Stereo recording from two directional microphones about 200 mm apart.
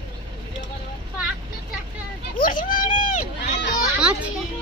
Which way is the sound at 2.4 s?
45° left (ahead or behind).